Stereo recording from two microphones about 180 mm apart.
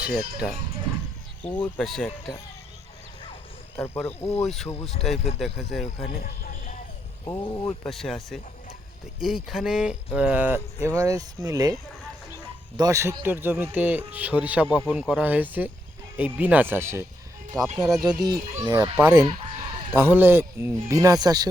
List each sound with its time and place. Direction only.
0.0 s speech: 5° right (ahead or behind)
3.8 s speech: 15° left (ahead or behind)
4.4 s speech: centre (ahead or behind)
6.1 s music: 50° left (ahead or behind)
7.3 s speech: 20° left (ahead or behind)
7.9 s speech: centre (ahead or behind); by 17.1 s 15° right (ahead or behind)
17.7 s speech: centre (ahead or behind)
18.6 s speech: 20° right (ahead or behind)